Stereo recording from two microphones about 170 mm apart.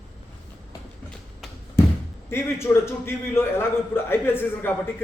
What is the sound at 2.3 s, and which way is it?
A man's voice, 15° left (ahead or behind).